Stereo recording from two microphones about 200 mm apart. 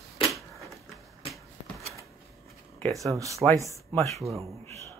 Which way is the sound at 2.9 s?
15° right (ahead or behind).